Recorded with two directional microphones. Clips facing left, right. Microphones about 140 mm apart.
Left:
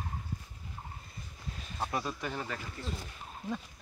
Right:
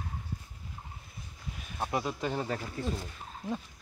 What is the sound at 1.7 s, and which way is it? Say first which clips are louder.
Speech: right 3 dB; 20° right (ahead or behind).